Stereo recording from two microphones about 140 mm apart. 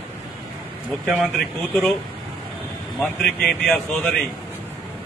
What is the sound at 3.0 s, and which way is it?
A man's voice, 5° left (ahead or behind).